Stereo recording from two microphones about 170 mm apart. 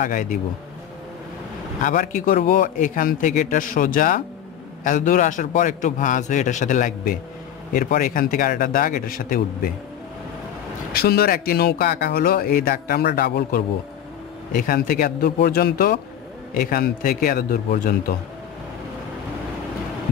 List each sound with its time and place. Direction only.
0.0 s a man's voice: 50° left (ahead or behind)
1.8 s a man's voice: 50° left (ahead or behind)
10.9 s speech: 65° left (ahead or behind)